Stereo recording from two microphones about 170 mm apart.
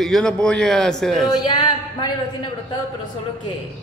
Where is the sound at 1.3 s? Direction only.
25° left (ahead or behind).